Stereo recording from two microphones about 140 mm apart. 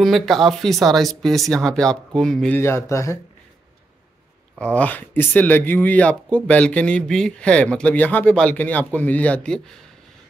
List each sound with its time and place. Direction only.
0.0 s speech: centre (ahead or behind)
2.6 s speech: 20° left (ahead or behind)
4.7 s speech: 10° left (ahead or behind)